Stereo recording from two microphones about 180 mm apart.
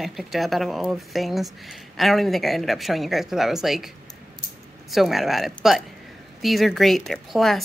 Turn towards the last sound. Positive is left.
turn(degrees=0)  # may be behind; listen again after turning